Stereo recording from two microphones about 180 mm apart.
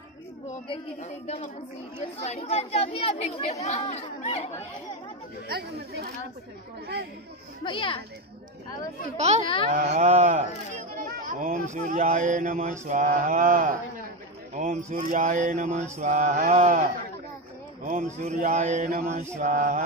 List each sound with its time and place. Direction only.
1.0 s speech: 40° left (ahead or behind)
5.5 s speech: 60° right (ahead or behind)
7.6 s a child's voice: 30° left (ahead or behind)
9.1 s mantra: 40° right (ahead or behind)
9.7 s speech: 40° right (ahead or behind)
17.8 s mantra: 45° right (ahead or behind)
19.3 s speech: 45° right (ahead or behind)